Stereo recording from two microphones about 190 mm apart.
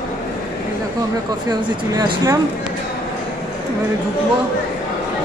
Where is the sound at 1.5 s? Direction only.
20° right (ahead or behind).